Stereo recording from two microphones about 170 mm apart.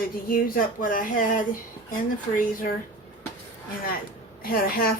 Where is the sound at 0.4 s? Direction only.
55° left (ahead or behind).